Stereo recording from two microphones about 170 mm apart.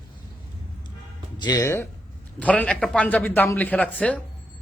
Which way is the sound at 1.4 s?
20° left (ahead or behind).